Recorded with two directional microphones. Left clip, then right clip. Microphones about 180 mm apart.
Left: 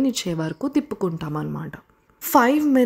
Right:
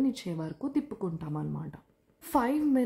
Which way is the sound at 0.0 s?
25° left (ahead or behind).